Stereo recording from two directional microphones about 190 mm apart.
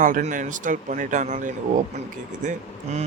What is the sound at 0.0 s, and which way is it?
Speech, 40° right (ahead or behind).